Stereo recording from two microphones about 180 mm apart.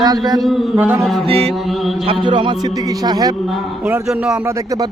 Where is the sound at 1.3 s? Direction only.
35° right (ahead or behind).